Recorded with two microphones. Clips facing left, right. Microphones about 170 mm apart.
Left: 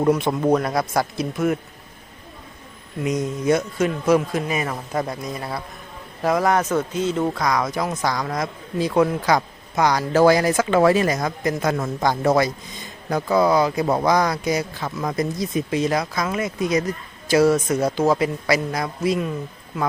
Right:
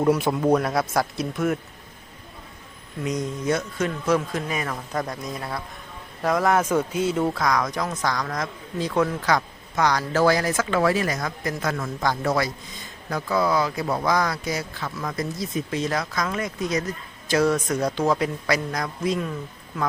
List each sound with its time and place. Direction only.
0.1 s speech: 5° right (ahead or behind)
3.0 s speech: 10° left (ahead or behind); by 7.2 s 10° right (ahead or behind)
7.3 s speech: 5° left (ahead or behind); by 11.9 s 20° left (ahead or behind)
13.3 s speech: 20° left (ahead or behind)